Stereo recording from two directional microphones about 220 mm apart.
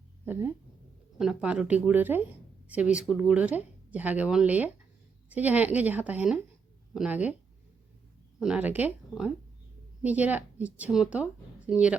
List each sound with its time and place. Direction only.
0.3 s speech: 10° right (ahead or behind)
8.4 s speech: 5° right (ahead or behind)